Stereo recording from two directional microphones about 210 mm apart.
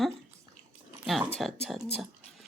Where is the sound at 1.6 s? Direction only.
Centre (ahead or behind).